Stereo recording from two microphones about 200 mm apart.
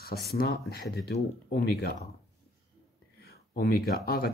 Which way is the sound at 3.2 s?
50° left (ahead or behind).